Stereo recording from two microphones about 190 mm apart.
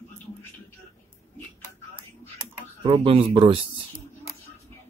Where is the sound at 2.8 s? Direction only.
30° right (ahead or behind).